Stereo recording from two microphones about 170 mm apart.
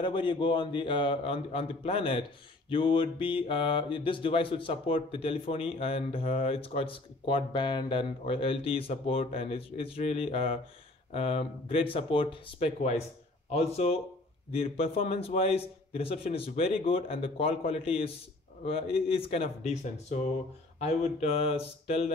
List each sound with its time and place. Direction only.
0.0 s a man's voice: 30° left (ahead or behind)